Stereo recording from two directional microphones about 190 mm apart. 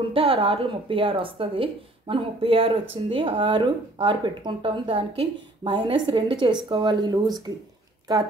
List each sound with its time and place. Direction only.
0.1 s speech: 30° right (ahead or behind)